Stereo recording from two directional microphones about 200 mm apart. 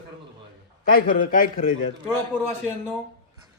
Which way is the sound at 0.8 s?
45° left (ahead or behind).